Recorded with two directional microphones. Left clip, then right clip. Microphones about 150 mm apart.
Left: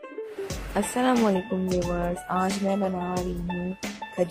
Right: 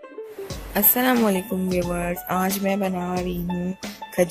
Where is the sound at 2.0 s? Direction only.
10° right (ahead or behind).